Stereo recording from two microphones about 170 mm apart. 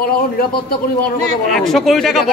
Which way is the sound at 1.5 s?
Centre (ahead or behind).